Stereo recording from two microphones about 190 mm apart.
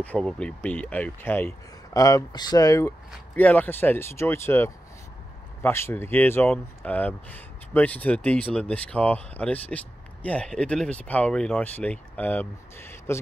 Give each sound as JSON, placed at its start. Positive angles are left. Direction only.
{"t": 0.0, "sound": "speech", "side_deg": 5}